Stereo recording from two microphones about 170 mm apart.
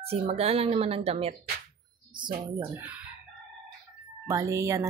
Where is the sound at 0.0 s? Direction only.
35° right (ahead or behind).